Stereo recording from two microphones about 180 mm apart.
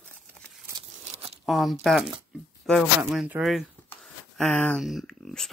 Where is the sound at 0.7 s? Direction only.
35° right (ahead or behind).